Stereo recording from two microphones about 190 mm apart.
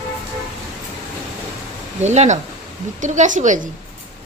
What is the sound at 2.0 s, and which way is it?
Speech, 35° right (ahead or behind).